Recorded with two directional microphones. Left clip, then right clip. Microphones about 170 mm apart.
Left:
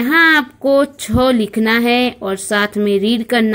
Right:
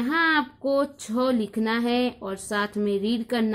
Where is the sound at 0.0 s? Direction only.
20° left (ahead or behind).